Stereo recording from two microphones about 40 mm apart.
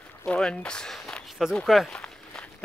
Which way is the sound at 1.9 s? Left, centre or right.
Left.